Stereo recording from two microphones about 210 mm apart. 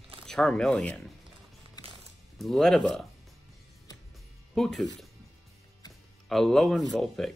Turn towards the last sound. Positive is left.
turn(degrees=0)  # may be behind; listen again after turning